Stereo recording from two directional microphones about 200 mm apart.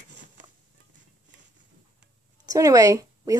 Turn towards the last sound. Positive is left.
turn(degrees=-15)  # may be behind; listen again after turning